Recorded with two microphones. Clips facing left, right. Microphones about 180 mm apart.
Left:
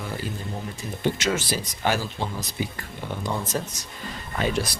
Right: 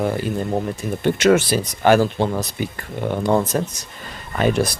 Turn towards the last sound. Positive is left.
turn(degrees=-55)  # may be behind; listen again after turning